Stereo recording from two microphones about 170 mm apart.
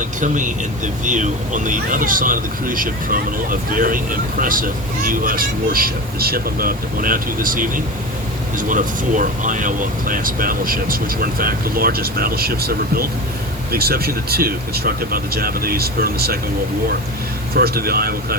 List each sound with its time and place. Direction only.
0.2 s speech: 50° right (ahead or behind)
17.5 s speech: 65° right (ahead or behind)